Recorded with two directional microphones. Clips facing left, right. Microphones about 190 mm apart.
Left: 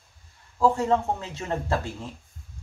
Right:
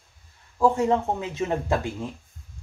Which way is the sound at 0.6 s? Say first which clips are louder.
Right 1 dB; 15° right (ahead or behind).